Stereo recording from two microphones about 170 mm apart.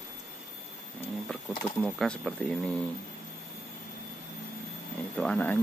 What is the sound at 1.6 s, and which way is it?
Speech, 5° left (ahead or behind).